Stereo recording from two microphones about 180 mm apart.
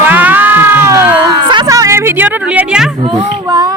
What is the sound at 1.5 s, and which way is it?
Speech, 20° right (ahead or behind).